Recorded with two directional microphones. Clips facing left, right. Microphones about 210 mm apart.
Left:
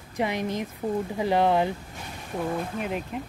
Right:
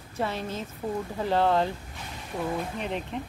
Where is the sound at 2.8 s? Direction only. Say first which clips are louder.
Left 1 dB; 5° left (ahead or behind).